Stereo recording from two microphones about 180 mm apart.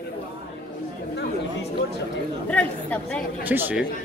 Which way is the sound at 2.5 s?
5° left (ahead or behind).